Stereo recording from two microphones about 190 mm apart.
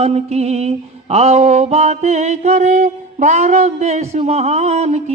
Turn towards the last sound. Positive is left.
turn(degrees=-35)  # may be behind; listen again after turning